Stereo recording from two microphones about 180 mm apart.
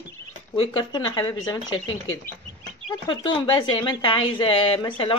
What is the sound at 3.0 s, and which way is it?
Speech, 25° left (ahead or behind).